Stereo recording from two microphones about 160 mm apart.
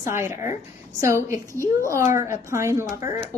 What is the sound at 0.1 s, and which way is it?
Speech, 20° right (ahead or behind).